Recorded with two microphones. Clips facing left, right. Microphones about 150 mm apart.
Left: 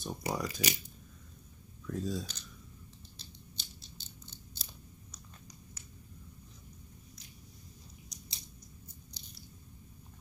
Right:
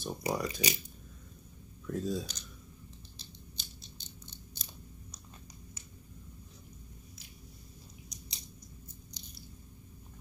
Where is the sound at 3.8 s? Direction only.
15° right (ahead or behind).